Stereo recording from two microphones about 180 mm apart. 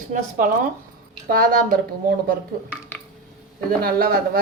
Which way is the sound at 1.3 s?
50° right (ahead or behind).